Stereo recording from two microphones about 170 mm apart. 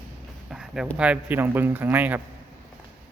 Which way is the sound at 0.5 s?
5° right (ahead or behind).